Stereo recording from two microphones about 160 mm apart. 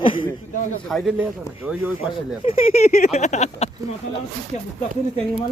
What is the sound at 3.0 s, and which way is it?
Speech, 45° left (ahead or behind).